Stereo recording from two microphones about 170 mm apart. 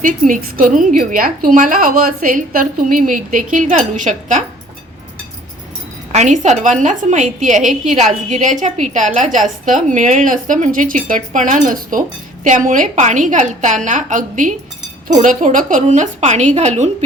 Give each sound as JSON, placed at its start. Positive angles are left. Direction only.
{"t": 0.0, "sound": "a woman's voice", "side_deg": -50}
{"t": 6.1, "sound": "a woman's voice", "side_deg": -45}